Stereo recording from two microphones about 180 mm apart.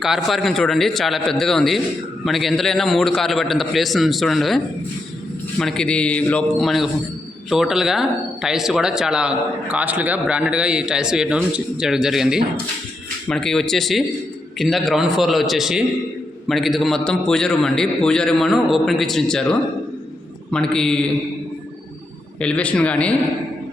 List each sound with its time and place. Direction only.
0.0 s speech: centre (ahead or behind)
22.4 s speech: 5° left (ahead or behind)